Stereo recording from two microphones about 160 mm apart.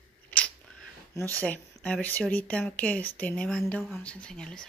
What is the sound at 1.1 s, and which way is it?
Speech, 10° left (ahead or behind).